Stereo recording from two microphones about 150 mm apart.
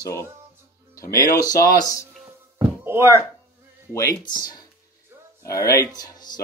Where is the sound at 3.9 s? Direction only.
20° left (ahead or behind).